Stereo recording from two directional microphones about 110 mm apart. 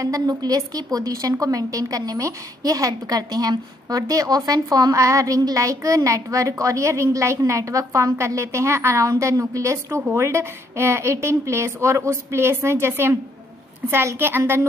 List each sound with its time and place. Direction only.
0.0 s a woman's voice: 35° right (ahead or behind)